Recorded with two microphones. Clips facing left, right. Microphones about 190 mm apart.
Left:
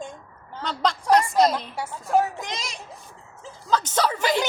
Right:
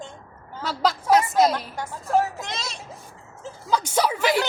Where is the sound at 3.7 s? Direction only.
10° right (ahead or behind).